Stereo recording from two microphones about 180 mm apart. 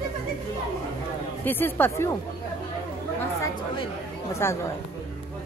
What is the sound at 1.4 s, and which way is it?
Speech, 10° left (ahead or behind).